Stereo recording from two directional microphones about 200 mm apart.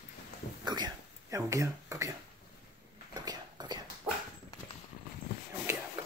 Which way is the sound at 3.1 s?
20° right (ahead or behind).